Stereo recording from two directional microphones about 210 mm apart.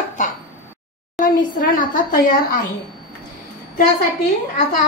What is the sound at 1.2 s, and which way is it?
A woman's voice, 40° left (ahead or behind).